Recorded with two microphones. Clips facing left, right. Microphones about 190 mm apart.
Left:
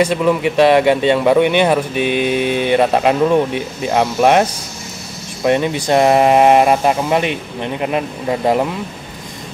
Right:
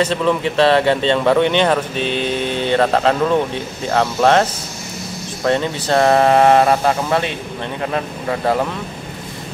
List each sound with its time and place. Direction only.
0.0 s speech: 10° left (ahead or behind)